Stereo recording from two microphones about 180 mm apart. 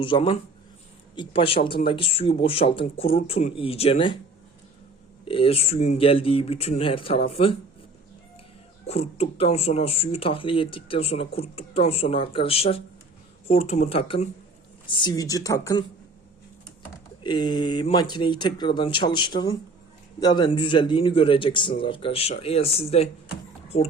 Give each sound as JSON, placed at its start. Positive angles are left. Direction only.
{"t": 0.0, "sound": "a man's voice", "side_deg": 30}
{"t": 5.3, "sound": "speech", "side_deg": 30}
{"t": 8.9, "sound": "a man's voice", "side_deg": 35}
{"t": 17.2, "sound": "a man's voice", "side_deg": 25}